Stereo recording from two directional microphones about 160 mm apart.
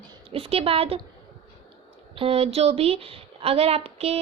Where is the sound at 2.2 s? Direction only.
40° right (ahead or behind).